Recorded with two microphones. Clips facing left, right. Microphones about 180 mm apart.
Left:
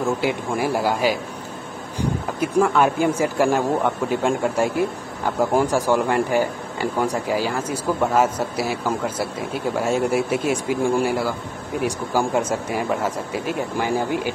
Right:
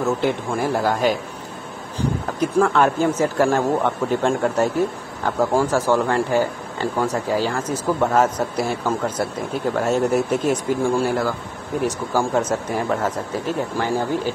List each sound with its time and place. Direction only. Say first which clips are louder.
0.2 s speech: right 1 dB; 10° left (ahead or behind)